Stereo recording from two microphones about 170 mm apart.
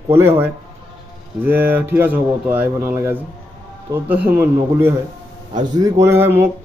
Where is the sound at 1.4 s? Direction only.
10° right (ahead or behind).